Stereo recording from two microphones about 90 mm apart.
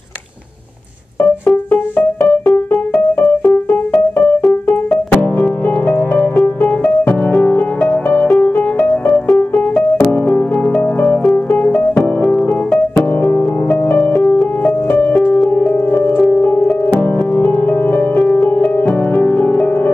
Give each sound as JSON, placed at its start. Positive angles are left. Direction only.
{"t": 1.5, "sound": "music", "side_deg": 15}
{"t": 4.4, "sound": "music", "side_deg": 5}
{"t": 12.0, "sound": "music", "side_deg": 10}
{"t": 13.2, "sound": "music", "side_deg": 20}